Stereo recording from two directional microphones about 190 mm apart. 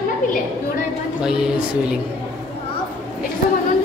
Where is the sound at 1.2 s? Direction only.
5° right (ahead or behind).